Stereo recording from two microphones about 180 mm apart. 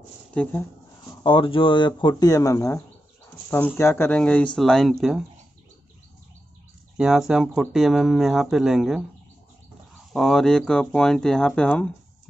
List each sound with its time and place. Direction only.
0.3 s speech: 10° left (ahead or behind)
1.2 s speech: 30° left (ahead or behind); by 5.2 s centre (ahead or behind)
7.0 s speech: 5° right (ahead or behind)
10.1 s speech: centre (ahead or behind)